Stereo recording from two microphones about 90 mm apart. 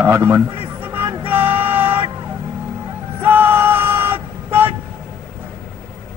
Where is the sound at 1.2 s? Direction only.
20° right (ahead or behind).